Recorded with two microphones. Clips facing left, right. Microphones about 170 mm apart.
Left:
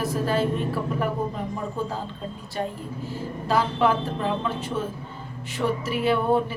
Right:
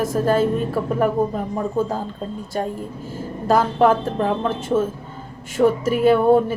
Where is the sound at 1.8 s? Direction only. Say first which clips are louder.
Right 7 dB; 45° right (ahead or behind).